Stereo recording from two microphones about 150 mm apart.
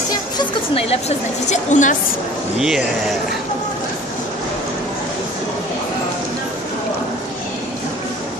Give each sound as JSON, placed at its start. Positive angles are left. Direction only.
{"t": 0.7, "sound": "a woman's voice", "side_deg": 45}